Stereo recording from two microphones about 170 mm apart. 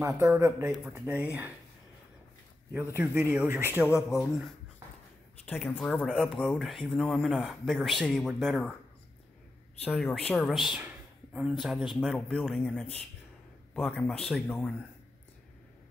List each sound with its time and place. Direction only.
0.0 s speech: 15° right (ahead or behind)
2.7 s speech: 10° right (ahead or behind)
4.1 s speech: 20° left (ahead or behind)
5.4 s speech: 5° left (ahead or behind)
9.8 s speech: 5° left (ahead or behind)